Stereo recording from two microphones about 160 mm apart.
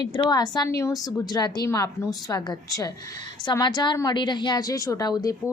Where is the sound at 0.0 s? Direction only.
25° left (ahead or behind).